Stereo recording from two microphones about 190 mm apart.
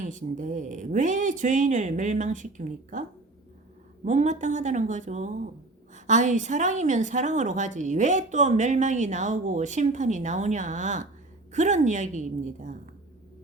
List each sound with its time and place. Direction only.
0.0 s a woman's voice: 40° right (ahead or behind)
4.0 s a woman's voice: 40° right (ahead or behind)